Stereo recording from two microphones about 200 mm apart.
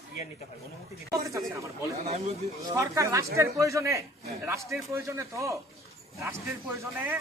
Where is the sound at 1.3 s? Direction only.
15° right (ahead or behind).